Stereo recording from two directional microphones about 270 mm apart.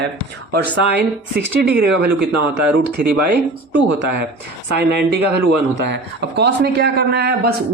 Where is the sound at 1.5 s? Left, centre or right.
Right.